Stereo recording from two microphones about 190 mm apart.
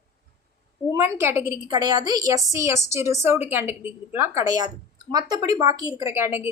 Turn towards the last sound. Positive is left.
turn(degrees=-10)  # may be behind; listen again after turning